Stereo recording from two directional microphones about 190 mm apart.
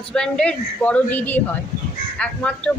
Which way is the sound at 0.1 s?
5° left (ahead or behind).